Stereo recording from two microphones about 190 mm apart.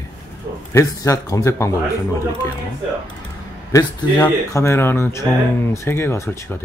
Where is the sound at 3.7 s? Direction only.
15° left (ahead or behind).